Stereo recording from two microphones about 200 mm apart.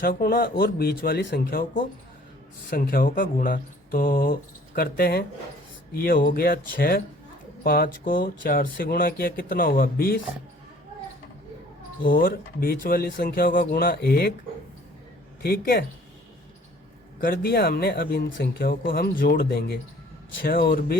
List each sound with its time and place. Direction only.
0.0 s speech: 45° left (ahead or behind)
1.5 s speech: 45° left (ahead or behind)
12.0 s speech: 45° left (ahead or behind)
17.2 s speech: 50° left (ahead or behind)